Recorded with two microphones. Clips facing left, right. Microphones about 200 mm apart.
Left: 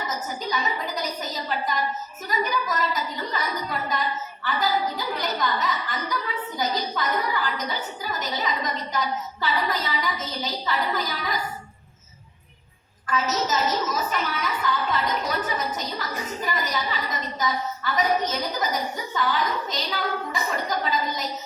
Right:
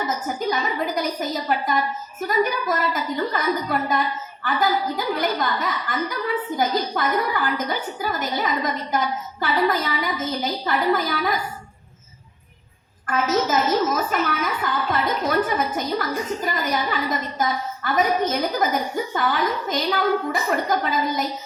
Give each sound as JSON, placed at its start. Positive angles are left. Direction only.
{"t": 0.3, "sound": "a sound", "side_deg": -55}
{"t": 1.5, "sound": "a woman's voice", "side_deg": -55}
{"t": 13.1, "sound": "a woman's voice", "side_deg": -55}